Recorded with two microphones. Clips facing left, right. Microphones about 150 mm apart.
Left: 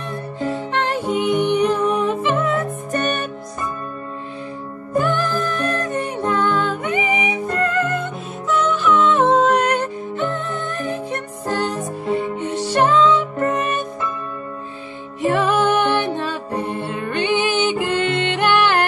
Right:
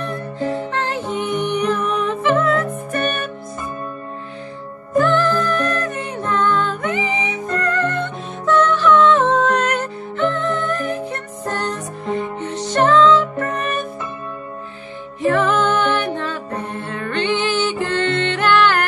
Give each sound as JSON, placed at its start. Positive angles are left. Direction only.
{"t": 0.6, "sound": "music", "side_deg": 15}
{"t": 4.9, "sound": "music", "side_deg": 15}
{"t": 15.2, "sound": "music", "side_deg": 15}